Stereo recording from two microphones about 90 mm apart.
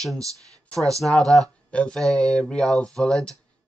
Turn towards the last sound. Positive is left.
turn(degrees=10)  # may be behind; listen again after turning